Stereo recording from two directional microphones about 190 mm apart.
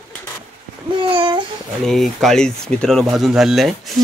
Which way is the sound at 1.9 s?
Centre (ahead or behind).